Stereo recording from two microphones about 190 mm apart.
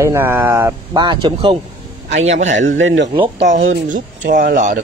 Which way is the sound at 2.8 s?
75° right (ahead or behind).